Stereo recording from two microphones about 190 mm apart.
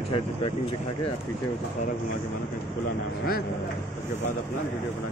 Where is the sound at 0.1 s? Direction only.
25° left (ahead or behind).